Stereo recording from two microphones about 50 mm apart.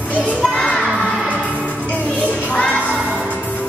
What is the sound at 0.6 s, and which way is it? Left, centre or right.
Music, left.